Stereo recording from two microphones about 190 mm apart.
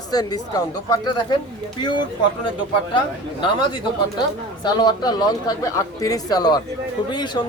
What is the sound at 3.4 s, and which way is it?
Speech, 25° left (ahead or behind).